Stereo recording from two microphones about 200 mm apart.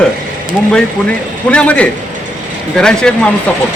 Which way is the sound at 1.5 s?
5° left (ahead or behind).